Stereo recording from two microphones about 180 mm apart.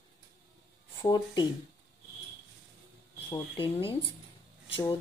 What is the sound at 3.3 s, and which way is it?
Speech, 30° left (ahead or behind).